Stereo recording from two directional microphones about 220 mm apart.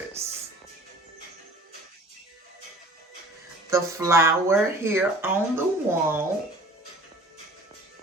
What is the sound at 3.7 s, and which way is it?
Speech, 10° right (ahead or behind).